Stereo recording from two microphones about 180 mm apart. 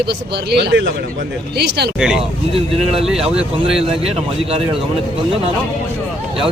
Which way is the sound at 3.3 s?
5° right (ahead or behind).